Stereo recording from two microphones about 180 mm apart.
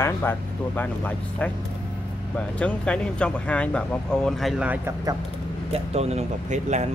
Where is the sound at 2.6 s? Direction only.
5° left (ahead or behind).